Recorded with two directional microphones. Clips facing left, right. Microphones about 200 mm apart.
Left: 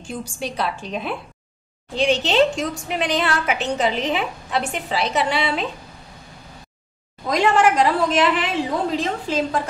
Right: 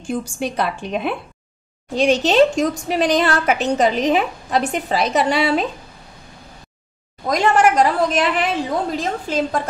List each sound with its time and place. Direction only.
0.1 s a woman's voice: 50° right (ahead or behind)
2.0 s a woman's voice: 45° right (ahead or behind)
7.2 s a woman's voice: 45° right (ahead or behind)